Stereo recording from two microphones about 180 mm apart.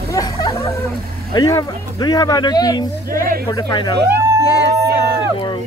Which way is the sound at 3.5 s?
20° left (ahead or behind).